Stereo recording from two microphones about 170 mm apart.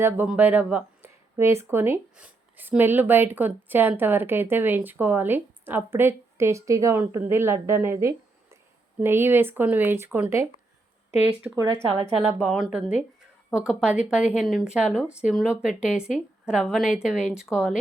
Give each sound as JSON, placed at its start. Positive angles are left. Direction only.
{"t": 0.0, "sound": "speech", "side_deg": -10}
{"t": 11.4, "sound": "speech", "side_deg": -20}